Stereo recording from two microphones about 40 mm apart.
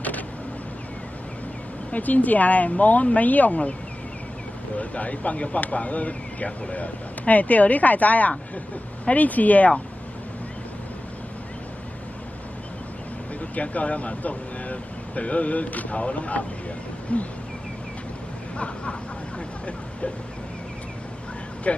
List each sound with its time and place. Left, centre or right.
1.9 s speech: left
4.7 s speech: left
13.6 s speech: left
21.7 s speech: left